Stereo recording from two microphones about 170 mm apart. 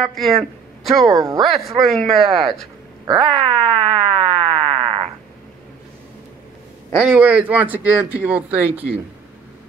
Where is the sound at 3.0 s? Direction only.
30° right (ahead or behind).